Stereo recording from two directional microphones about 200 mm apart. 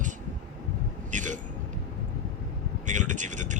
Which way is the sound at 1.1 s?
40° right (ahead or behind).